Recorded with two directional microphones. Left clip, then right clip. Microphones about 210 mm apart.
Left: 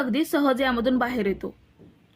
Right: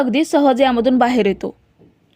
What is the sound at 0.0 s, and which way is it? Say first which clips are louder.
A woman's voice: right 9 dB; 30° right (ahead or behind).